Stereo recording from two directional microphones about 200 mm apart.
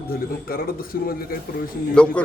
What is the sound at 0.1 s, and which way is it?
A man's voice, 50° left (ahead or behind).